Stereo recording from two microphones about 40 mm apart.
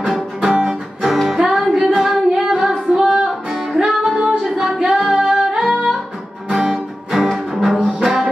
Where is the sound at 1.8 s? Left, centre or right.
Centre.